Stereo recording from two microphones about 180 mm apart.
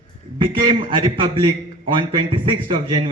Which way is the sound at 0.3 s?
25° right (ahead or behind).